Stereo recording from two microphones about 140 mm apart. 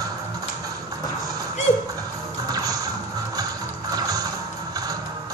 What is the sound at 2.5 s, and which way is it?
Music, 25° right (ahead or behind).